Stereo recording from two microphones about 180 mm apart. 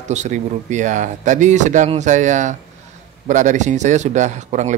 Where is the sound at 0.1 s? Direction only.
40° right (ahead or behind).